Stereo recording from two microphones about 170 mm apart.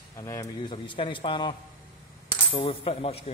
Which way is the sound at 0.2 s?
20° left (ahead or behind).